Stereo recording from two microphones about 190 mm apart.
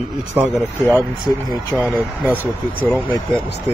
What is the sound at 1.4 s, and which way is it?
Speech, 20° left (ahead or behind).